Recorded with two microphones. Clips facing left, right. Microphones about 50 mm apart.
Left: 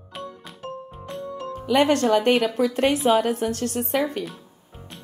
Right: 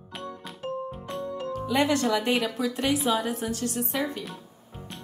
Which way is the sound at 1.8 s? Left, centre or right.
Left.